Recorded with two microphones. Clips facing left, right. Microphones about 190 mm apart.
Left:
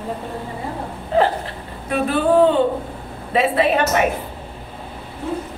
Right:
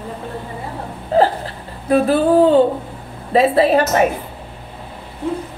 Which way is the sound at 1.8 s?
40° right (ahead or behind).